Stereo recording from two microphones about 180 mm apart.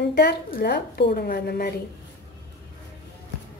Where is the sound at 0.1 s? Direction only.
65° left (ahead or behind).